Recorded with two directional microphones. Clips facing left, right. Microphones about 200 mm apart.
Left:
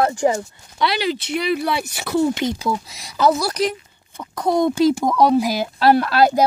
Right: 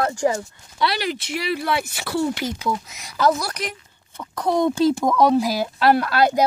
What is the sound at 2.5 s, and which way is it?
Speech, 35° left (ahead or behind).